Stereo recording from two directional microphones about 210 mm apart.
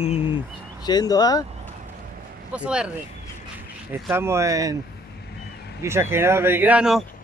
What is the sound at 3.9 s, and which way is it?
Speech, 10° right (ahead or behind).